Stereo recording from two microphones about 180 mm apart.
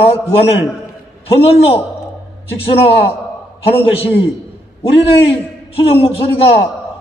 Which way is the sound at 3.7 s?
35° left (ahead or behind).